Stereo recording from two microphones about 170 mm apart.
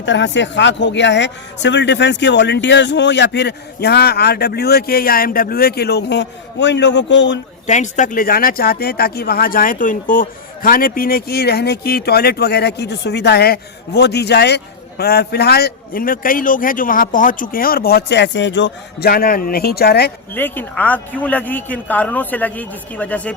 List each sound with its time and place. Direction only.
0.0 s speech: 90° left
7.7 s speech: 45° left (ahead or behind); by 20.1 s 70° left (ahead or behind)
20.3 s a man's voice: 10° left (ahead or behind)